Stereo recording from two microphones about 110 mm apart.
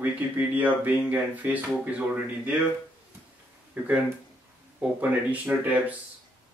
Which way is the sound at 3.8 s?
15° right (ahead or behind).